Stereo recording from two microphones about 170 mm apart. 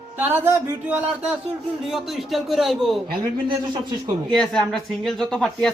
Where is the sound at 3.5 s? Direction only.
25° right (ahead or behind).